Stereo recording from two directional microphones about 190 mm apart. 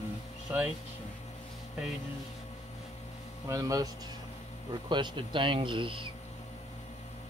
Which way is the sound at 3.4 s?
15° right (ahead or behind).